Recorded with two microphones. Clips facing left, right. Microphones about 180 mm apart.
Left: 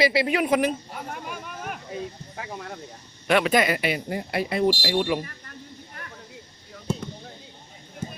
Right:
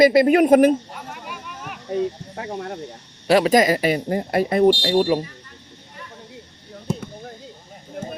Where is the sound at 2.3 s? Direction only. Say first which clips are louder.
Right 7 dB; 35° right (ahead or behind).